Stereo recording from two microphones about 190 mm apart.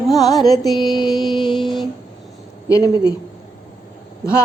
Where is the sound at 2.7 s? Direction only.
20° left (ahead or behind).